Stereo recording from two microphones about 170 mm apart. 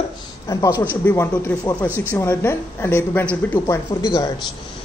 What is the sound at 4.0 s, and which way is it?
Speech, 25° left (ahead or behind).